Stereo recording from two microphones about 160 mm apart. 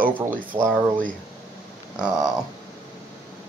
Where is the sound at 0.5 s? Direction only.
20° right (ahead or behind).